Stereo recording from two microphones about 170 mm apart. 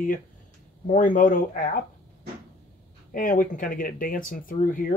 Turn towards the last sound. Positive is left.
turn(degrees=55)  # may be behind; listen again after turning